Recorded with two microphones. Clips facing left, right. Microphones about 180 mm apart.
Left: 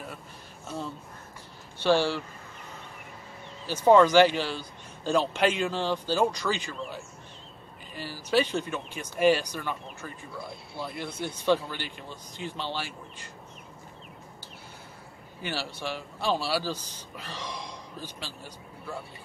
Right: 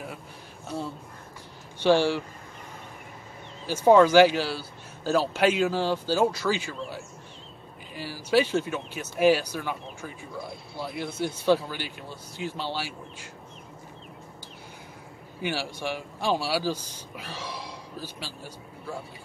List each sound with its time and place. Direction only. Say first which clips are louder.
0.7 s a man's voice: right 2 dB; 10° right (ahead or behind)
3.6 s a man's voice: right 1 dB; 10° right (ahead or behind)
15.4 s a man's voice: right 3 dB; 10° right (ahead or behind)